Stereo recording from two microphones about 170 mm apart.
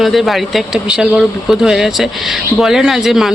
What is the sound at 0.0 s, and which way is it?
Speech, centre (ahead or behind).